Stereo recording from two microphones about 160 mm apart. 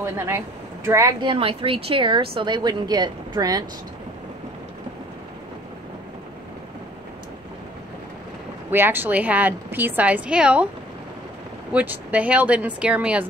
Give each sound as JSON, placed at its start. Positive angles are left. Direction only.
{"t": 0.0, "sound": "a woman's voice", "side_deg": -15}
{"t": 8.6, "sound": "a woman's voice", "side_deg": -15}
{"t": 11.7, "sound": "a woman's voice", "side_deg": -10}